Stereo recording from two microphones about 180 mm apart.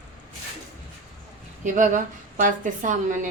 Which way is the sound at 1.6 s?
45° right (ahead or behind).